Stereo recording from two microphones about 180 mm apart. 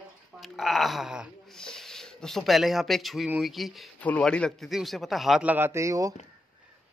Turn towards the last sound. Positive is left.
turn(degrees=-15)  # may be behind; listen again after turning